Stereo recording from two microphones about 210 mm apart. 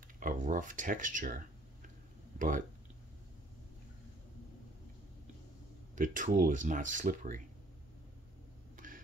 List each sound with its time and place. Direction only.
0.2 s speech: 40° right (ahead or behind)
5.9 s speech: 40° right (ahead or behind)
8.7 s a sound: 40° right (ahead or behind)